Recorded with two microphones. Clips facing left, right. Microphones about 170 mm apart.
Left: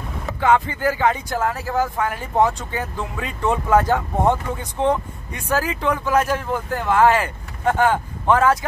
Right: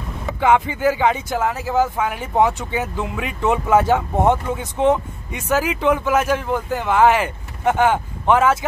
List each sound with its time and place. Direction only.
0.4 s speech: 15° right (ahead or behind)